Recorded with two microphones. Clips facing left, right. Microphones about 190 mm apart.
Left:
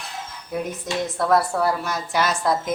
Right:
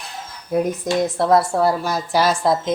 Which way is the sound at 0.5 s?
35° right (ahead or behind).